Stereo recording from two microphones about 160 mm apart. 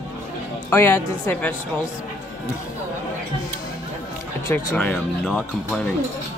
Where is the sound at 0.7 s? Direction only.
15° left (ahead or behind).